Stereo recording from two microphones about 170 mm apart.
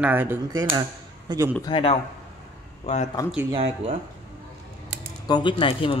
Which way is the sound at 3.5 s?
35° right (ahead or behind).